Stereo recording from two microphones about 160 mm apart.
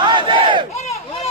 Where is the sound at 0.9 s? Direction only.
40° left (ahead or behind).